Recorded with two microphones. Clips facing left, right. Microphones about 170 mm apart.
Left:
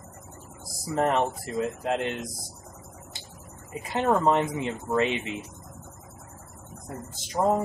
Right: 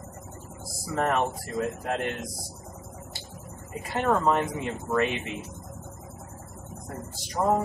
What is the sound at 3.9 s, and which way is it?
Speech, 20° left (ahead or behind).